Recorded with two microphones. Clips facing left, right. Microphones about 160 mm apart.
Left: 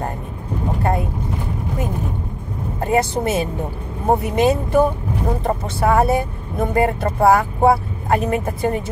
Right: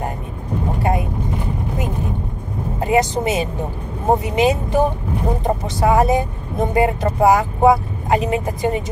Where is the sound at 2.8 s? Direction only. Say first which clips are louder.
Right 1 dB; 15° right (ahead or behind).